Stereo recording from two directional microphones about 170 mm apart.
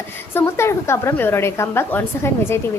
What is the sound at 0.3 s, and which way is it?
A woman's voice, 15° left (ahead or behind).